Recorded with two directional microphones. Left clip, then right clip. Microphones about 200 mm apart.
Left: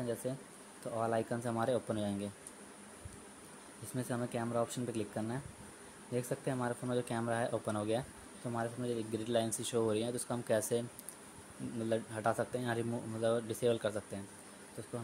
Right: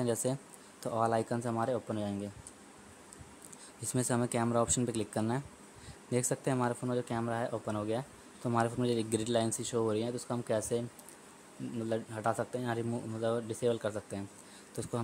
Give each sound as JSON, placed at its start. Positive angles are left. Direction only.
{"t": 0.0, "sound": "speech", "side_deg": -20}
{"t": 3.9, "sound": "speech", "side_deg": -20}
{"t": 8.5, "sound": "speech", "side_deg": -25}
{"t": 11.9, "sound": "speech", "side_deg": -10}